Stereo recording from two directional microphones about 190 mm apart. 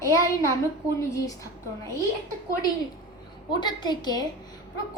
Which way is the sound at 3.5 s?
20° left (ahead or behind).